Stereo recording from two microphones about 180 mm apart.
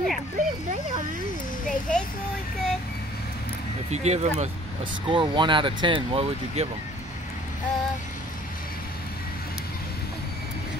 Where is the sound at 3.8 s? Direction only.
40° right (ahead or behind).